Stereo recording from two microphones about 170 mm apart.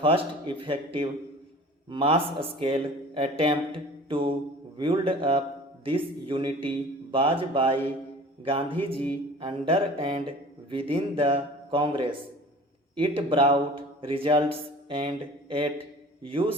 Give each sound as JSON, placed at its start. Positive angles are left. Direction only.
{"t": 0.0, "sound": "speech", "side_deg": -30}
{"t": 14.8, "sound": "a sound", "side_deg": -30}
{"t": 16.2, "sound": "speech", "side_deg": -30}